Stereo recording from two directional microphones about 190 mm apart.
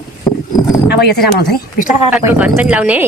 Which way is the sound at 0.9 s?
60° left (ahead or behind).